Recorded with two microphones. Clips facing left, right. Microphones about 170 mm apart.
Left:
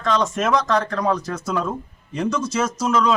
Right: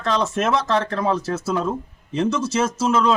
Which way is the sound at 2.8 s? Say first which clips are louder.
Even; 25° right (ahead or behind).